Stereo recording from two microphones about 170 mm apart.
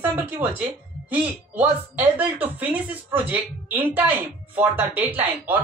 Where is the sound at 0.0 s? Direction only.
10° right (ahead or behind).